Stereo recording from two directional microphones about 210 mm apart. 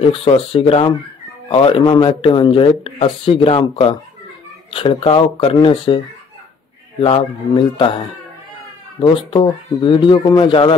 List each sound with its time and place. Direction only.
0.0 s speech: 25° left (ahead or behind)
7.0 s speech: 25° left (ahead or behind)
9.0 s speech: 25° left (ahead or behind)